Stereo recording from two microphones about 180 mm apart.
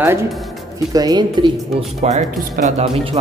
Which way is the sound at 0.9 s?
20° right (ahead or behind).